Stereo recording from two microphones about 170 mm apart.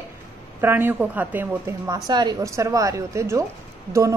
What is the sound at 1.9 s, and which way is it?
A woman's voice, 25° right (ahead or behind).